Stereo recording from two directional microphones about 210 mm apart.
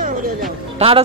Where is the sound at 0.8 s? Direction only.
30° right (ahead or behind).